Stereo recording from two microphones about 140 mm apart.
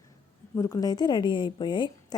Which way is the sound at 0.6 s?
25° left (ahead or behind).